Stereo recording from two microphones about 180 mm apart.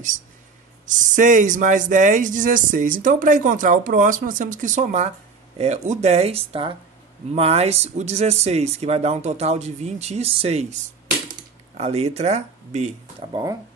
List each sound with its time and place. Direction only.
0.9 s speech: 45° right (ahead or behind)
13.3 s speech: 20° right (ahead or behind)